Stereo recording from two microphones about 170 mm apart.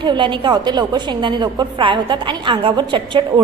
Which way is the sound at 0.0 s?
25° right (ahead or behind).